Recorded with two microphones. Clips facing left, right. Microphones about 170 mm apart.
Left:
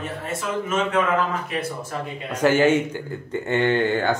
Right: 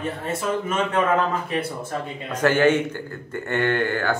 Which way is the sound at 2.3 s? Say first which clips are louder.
Left 1 dB; 10° left (ahead or behind).